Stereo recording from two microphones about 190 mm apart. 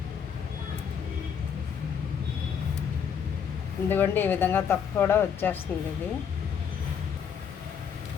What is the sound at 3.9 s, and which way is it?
A woman's voice, 10° left (ahead or behind).